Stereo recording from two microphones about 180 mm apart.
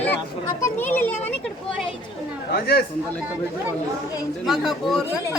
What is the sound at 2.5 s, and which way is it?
Speech, 60° left (ahead or behind).